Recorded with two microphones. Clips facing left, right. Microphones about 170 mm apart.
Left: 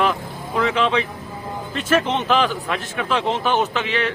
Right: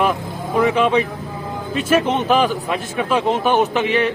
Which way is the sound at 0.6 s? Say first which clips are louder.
Right 4 dB; 15° right (ahead or behind).